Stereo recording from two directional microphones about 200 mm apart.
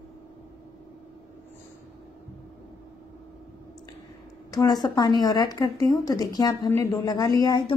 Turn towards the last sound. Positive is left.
turn(degrees=20)  # may be behind; listen again after turning